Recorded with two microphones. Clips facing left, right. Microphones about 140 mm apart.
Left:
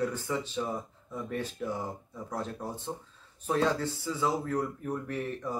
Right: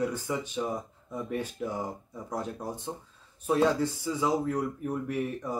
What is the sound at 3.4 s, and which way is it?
Speech, 10° right (ahead or behind).